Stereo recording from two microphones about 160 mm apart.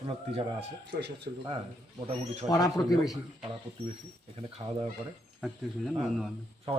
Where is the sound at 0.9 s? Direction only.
90° right.